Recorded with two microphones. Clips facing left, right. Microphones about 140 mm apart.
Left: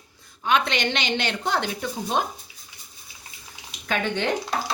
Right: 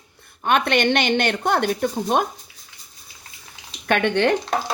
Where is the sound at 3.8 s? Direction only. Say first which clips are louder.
Right 6 dB; 65° right (ahead or behind).